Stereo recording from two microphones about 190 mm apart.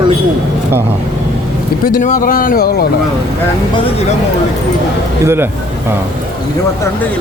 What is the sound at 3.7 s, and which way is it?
Speech, 30° left (ahead or behind).